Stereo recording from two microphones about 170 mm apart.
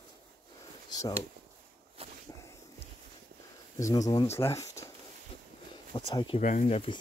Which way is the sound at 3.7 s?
20° left (ahead or behind).